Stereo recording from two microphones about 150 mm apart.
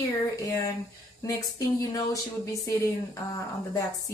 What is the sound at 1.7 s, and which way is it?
Speech, 25° left (ahead or behind).